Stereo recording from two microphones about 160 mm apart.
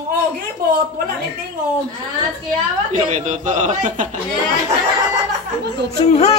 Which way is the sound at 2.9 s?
50° right (ahead or behind).